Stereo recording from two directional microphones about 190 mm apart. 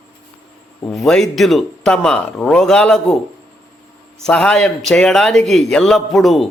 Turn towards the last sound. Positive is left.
turn(degrees=0)  # may be behind; listen again after turning